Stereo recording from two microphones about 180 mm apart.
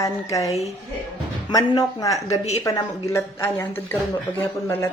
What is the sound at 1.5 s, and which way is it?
A woman's voice, 20° left (ahead or behind).